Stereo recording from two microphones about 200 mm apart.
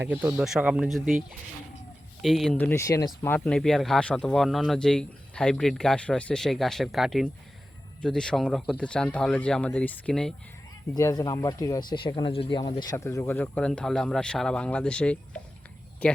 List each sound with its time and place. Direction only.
0.0 s speech: 10° right (ahead or behind)
10.9 s speech: 20° left (ahead or behind)